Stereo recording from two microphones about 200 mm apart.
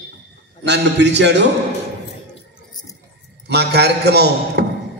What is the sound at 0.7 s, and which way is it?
Speech, 60° right (ahead or behind).